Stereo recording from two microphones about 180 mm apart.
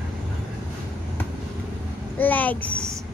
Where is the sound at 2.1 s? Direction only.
10° left (ahead or behind).